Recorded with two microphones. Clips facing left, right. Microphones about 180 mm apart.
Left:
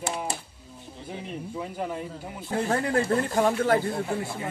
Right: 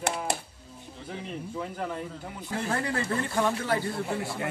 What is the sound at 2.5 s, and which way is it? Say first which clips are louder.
Speech: left 5 dB; 50° left (ahead or behind).